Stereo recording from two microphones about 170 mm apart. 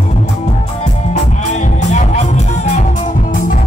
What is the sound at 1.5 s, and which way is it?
Music, 45° left (ahead or behind).